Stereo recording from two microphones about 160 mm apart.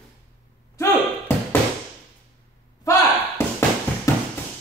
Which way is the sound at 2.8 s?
20° left (ahead or behind).